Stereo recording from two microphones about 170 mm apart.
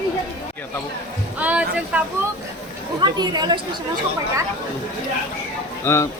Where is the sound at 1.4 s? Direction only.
10° right (ahead or behind).